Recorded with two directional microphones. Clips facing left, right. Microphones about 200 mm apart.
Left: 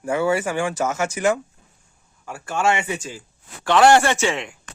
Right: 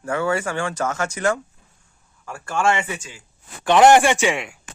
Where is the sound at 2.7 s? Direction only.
20° left (ahead or behind).